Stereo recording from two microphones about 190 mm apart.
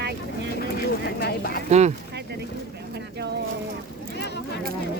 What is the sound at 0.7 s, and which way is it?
Speech, 55° left (ahead or behind).